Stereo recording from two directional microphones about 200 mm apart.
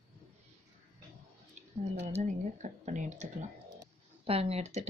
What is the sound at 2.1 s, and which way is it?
Speech, 35° right (ahead or behind).